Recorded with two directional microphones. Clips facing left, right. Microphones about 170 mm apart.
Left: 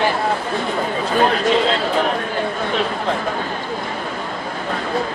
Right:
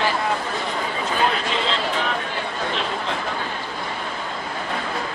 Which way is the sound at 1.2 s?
45° left (ahead or behind).